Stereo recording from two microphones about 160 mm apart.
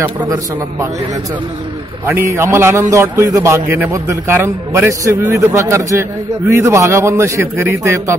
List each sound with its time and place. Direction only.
0.0 s a man's voice: 15° right (ahead or behind)
2.0 s a man's voice: 15° right (ahead or behind)